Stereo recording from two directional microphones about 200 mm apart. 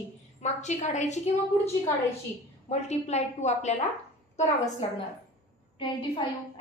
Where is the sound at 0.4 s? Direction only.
35° left (ahead or behind).